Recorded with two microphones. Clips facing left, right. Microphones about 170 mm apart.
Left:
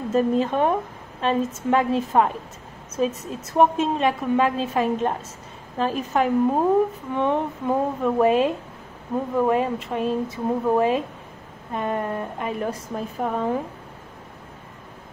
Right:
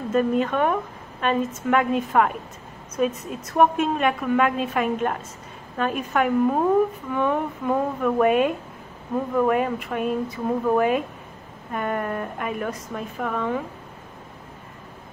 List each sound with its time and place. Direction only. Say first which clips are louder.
0.1 s a woman's voice: left 1 dB; 30° left (ahead or behind)